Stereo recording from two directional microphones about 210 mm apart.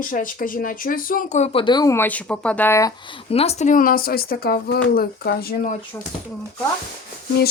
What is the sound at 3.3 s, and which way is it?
Speech, 30° left (ahead or behind).